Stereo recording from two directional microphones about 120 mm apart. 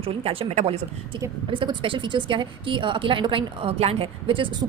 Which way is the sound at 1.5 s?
45° right (ahead or behind).